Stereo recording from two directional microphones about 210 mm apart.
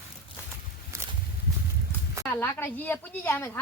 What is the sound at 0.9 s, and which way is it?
Walk, 15° right (ahead or behind).